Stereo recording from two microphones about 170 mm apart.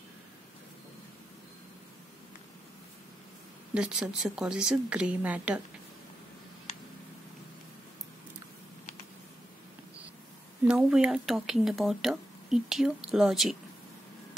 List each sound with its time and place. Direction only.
3.7 s speech: 5° right (ahead or behind)
10.7 s speech: 5° right (ahead or behind)